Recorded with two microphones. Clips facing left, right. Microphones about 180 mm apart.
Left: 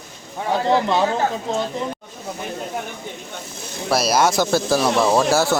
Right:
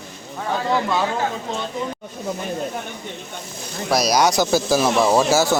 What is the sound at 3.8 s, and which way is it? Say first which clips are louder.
Speech: even; 5° left (ahead or behind).